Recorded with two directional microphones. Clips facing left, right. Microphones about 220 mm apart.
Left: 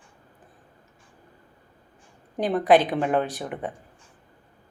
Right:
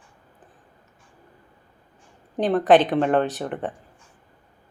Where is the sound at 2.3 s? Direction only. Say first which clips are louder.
Right 2 dB; 10° left (ahead or behind).